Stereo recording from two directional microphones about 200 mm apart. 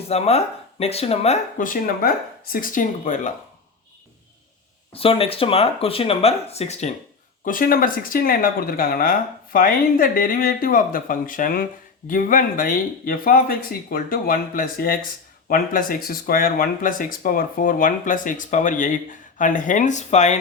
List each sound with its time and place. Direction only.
0.1 s speech: 30° left (ahead or behind)
4.9 s speech: 30° left (ahead or behind)
7.4 s speech: 45° left (ahead or behind)